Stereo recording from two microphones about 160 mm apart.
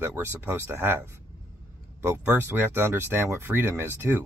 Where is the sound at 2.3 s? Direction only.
10° right (ahead or behind).